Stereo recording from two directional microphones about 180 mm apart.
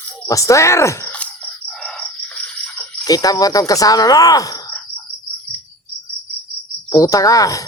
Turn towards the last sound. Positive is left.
turn(degrees=20)  # may be behind; listen again after turning